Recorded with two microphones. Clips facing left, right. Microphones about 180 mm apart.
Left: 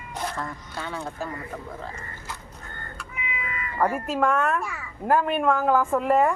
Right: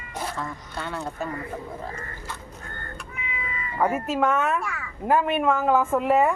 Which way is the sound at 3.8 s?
Centre (ahead or behind).